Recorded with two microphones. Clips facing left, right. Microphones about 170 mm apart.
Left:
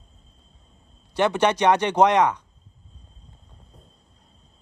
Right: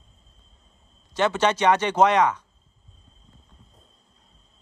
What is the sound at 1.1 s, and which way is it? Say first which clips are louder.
Speech: left 1 dB; 15° left (ahead or behind).